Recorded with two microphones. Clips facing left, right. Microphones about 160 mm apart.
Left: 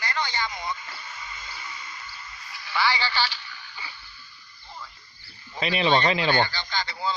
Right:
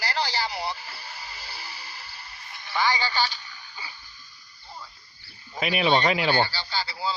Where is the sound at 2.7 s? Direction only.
45° right (ahead or behind).